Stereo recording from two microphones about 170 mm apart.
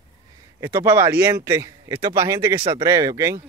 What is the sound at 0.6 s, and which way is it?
Speech, 25° right (ahead or behind).